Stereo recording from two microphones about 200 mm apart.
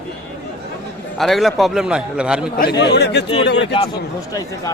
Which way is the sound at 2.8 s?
55° left (ahead or behind).